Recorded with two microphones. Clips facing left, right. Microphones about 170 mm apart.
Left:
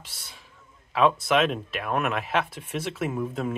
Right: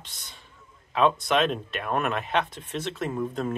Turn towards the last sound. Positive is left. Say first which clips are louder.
# even
turn(degrees=5)  # may be behind; listen again after turning